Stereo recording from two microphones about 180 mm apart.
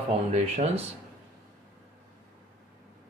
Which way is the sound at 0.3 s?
35° right (ahead or behind).